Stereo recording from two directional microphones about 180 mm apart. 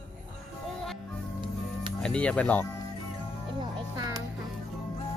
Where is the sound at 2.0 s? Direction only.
5° left (ahead or behind).